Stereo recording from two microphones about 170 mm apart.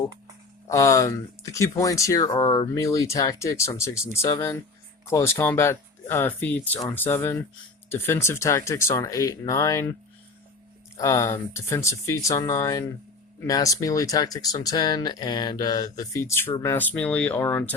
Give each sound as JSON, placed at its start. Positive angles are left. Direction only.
{"t": 0.7, "sound": "speech", "side_deg": 20}
{"t": 10.9, "sound": "speech", "side_deg": 20}